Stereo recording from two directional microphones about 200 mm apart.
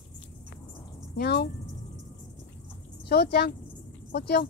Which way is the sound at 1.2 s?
55° left (ahead or behind).